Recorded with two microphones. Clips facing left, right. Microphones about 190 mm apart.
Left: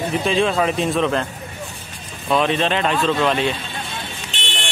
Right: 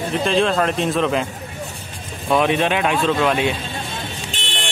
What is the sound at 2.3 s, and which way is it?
Speech, 10° right (ahead or behind).